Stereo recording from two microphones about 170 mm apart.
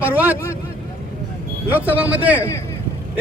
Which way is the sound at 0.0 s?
10° right (ahead or behind).